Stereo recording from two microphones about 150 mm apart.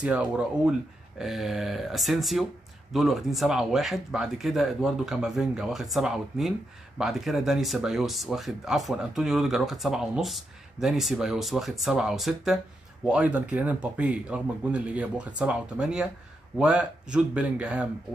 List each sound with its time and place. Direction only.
0.0 s speech: 5° right (ahead or behind)